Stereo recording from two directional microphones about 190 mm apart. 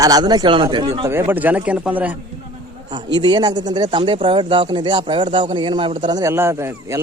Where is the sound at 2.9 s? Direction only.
25° right (ahead or behind).